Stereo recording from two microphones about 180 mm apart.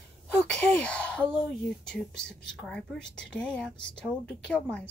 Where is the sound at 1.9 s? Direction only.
5° left (ahead or behind).